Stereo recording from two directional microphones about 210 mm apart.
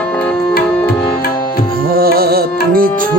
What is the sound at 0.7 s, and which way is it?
Tabla, 15° left (ahead or behind).